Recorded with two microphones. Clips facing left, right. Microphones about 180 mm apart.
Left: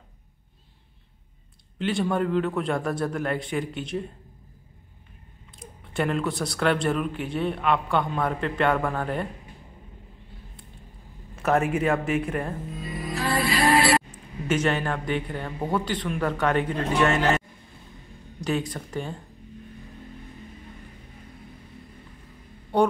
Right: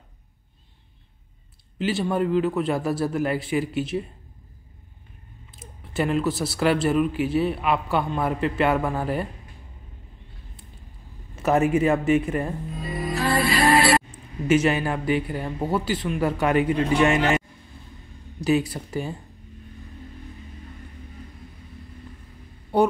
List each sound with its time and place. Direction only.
1.8 s speech: 5° right (ahead or behind)
5.6 s speech: 5° right (ahead or behind)
11.4 s speech: 5° right (ahead or behind)
13.1 s music: 65° right (ahead or behind)
14.5 s a man's voice: 10° right (ahead or behind)
18.4 s a man's voice: 10° right (ahead or behind)
22.7 s speech: 5° right (ahead or behind)